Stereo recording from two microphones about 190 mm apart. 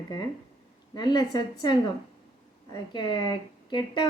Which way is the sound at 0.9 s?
20° left (ahead or behind).